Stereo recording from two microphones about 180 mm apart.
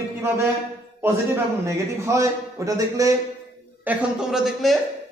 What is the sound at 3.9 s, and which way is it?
Speech, 5° right (ahead or behind).